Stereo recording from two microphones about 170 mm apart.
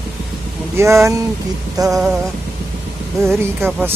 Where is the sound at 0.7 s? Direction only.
15° right (ahead or behind).